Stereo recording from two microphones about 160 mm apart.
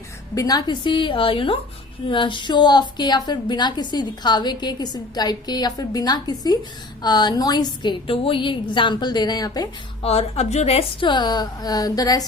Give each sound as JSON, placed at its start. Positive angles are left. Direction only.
{"t": 0.3, "sound": "a woman's voice", "side_deg": 25}
{"t": 10.0, "sound": "a woman's voice", "side_deg": 40}